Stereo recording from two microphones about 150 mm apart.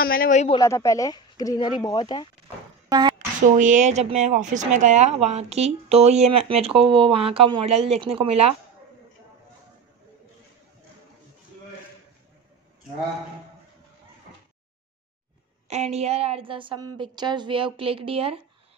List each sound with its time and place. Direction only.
0.0 s speech: 80° left
0.6 s speech: 20° left (ahead or behind)
2.9 s a sound: 30° right (ahead or behind)
3.4 s speech: 55° right (ahead or behind)
15.7 s a woman's voice: 45° right (ahead or behind)